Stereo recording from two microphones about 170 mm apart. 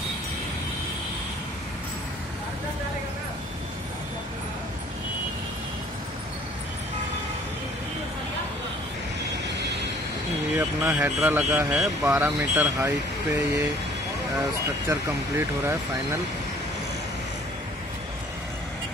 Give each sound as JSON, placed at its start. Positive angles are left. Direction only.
{"t": 10.5, "sound": "speech", "side_deg": -5}
{"t": 12.0, "sound": "speech", "side_deg": -15}
{"t": 14.9, "sound": "speech", "side_deg": -15}